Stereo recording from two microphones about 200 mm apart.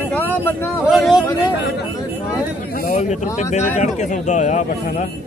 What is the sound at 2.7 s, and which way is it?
Speech, 45° left (ahead or behind).